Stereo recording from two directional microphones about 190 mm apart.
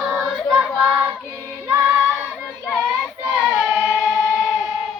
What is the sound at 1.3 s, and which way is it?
Child singing, 15° right (ahead or behind).